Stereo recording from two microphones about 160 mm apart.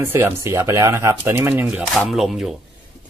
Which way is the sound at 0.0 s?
15° right (ahead or behind).